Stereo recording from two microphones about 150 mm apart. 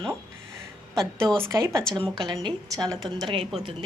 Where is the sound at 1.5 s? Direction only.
20° right (ahead or behind).